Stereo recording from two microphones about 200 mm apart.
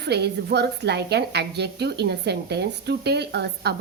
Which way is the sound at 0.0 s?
55° right (ahead or behind).